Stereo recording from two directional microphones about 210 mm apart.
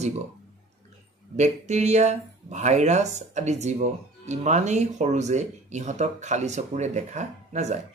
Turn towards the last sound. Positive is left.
turn(degrees=-35)  # may be behind; listen again after turning